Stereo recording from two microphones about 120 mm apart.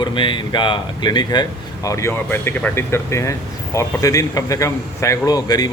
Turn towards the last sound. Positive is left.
turn(degrees=35)  # may be behind; listen again after turning